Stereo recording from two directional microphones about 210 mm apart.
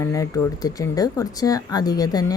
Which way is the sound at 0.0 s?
15° left (ahead or behind).